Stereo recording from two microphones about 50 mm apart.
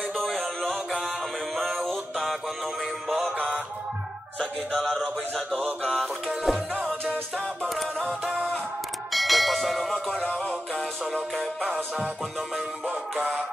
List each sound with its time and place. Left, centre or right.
0.1 s music: centre
1.5 s music: centre
3.3 s music: right
4.7 s music: centre
7.6 s music: centre
8.1 s music: right
9.1 s a sound: centre
12.8 s music: right